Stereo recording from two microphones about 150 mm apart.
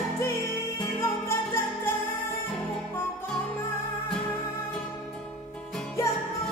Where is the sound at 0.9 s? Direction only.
15° left (ahead or behind).